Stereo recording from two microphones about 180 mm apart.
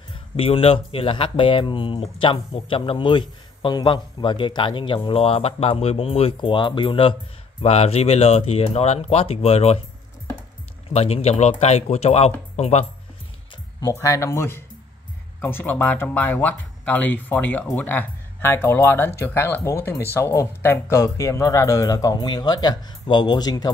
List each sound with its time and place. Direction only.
0.1 s speech: 30° left (ahead or behind)
10.9 s speech: 35° left (ahead or behind)
13.7 s speech: 20° left (ahead or behind)